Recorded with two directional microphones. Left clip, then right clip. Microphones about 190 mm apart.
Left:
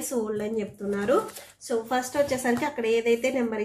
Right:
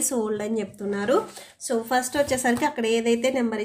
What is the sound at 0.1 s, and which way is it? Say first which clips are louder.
A woman's voice: left 1 dB; 25° right (ahead or behind).